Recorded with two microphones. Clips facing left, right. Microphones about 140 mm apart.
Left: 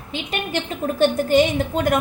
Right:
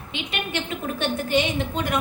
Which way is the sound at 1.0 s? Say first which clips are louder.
Left 8 dB; 45° left (ahead or behind).